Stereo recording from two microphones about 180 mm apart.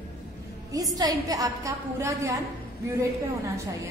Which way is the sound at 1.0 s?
20° right (ahead or behind).